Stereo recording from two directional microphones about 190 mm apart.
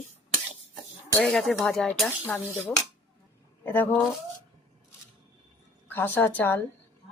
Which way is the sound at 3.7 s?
10° left (ahead or behind).